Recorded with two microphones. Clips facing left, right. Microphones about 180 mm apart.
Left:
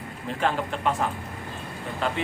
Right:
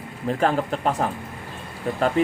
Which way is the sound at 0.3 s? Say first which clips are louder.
Right 4 dB; 40° right (ahead or behind).